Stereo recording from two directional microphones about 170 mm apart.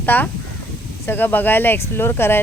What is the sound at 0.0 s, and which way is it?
Speech, 10° left (ahead or behind).